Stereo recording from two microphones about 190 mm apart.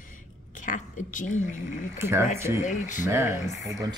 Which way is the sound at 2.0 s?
15° right (ahead or behind).